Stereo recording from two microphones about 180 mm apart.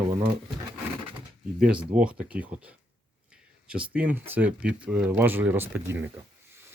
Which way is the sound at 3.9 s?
10° right (ahead or behind).